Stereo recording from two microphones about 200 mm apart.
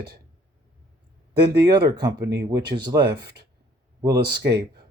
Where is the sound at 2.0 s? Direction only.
20° right (ahead or behind).